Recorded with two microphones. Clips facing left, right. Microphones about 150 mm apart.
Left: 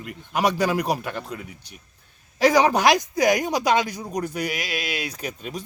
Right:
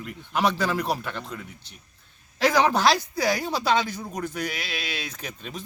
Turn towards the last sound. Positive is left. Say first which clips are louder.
# left 5 dB
turn(degrees=10)  # may be behind; listen again after turning